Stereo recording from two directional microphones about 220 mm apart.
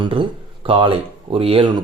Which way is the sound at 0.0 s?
25° right (ahead or behind).